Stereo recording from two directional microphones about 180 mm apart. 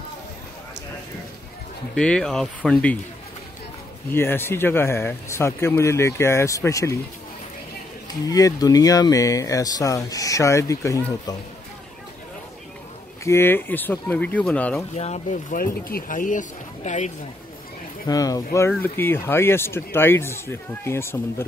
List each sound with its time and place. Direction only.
2.0 s speech: 5° left (ahead or behind)
4.1 s speech: 10° left (ahead or behind)
8.1 s speech: 20° left (ahead or behind)
13.2 s speech: 15° left (ahead or behind)
15.0 s speech: 40° left (ahead or behind)
15.5 s speech: 55° left (ahead or behind)
18.0 s speech: 20° left (ahead or behind)